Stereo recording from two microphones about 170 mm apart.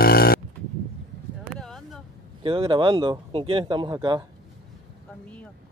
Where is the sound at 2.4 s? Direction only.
30° right (ahead or behind).